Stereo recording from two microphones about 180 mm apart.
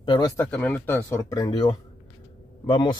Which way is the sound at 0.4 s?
10° left (ahead or behind).